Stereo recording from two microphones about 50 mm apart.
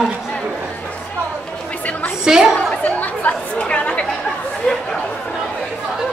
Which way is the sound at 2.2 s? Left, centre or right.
Centre.